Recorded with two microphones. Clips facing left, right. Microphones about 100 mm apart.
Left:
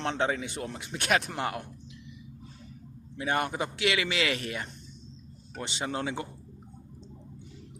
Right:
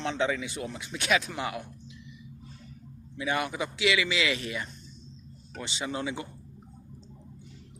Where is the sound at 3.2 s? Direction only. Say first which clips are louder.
Left 1 dB; 45° left (ahead or behind).